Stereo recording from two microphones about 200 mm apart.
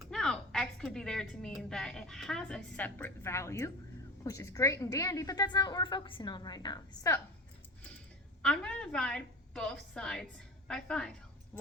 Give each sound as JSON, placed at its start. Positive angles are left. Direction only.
{"t": 0.1, "sound": "a woman's voice", "side_deg": 5}
{"t": 8.4, "sound": "a woman's voice", "side_deg": 5}